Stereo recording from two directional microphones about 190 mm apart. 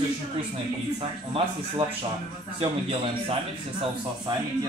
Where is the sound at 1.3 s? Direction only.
30° right (ahead or behind).